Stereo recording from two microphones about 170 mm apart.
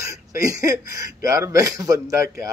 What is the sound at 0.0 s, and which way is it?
Speech, 20° right (ahead or behind).